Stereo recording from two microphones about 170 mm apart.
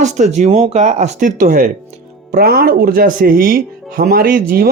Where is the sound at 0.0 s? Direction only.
45° right (ahead or behind).